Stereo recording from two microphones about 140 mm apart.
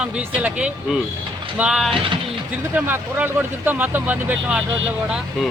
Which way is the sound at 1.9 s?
40° right (ahead or behind).